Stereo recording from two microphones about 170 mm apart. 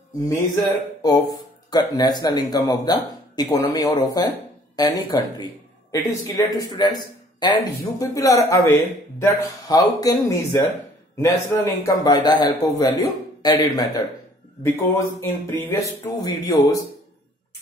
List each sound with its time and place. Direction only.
0.3 s speech: 20° left (ahead or behind)